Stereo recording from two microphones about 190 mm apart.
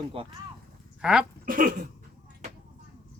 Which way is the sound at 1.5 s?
50° right (ahead or behind).